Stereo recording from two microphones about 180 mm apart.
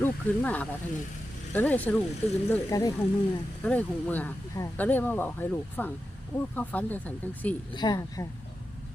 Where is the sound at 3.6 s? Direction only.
10° left (ahead or behind).